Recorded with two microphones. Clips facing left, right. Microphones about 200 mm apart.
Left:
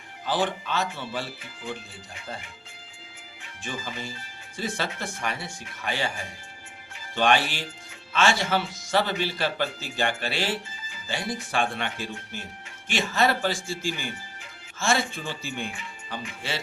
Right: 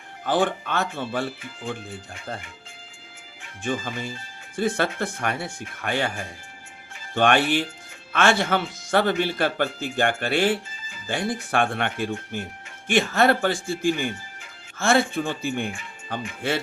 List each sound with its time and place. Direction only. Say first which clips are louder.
0.3 s speech: right 4 dB; 50° right (ahead or behind)
3.6 s speech: right 7 dB; 55° right (ahead or behind)